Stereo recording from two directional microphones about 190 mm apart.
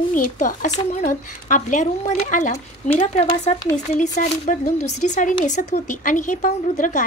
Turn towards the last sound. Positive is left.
turn(degrees=45)  # may be behind; listen again after turning